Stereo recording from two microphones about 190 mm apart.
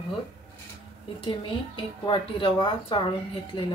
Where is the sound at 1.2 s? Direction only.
25° left (ahead or behind).